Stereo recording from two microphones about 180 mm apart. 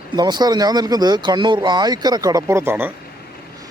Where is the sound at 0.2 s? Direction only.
25° right (ahead or behind).